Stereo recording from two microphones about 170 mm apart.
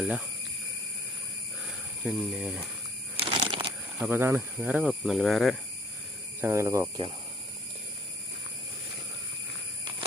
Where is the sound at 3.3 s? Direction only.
30° right (ahead or behind).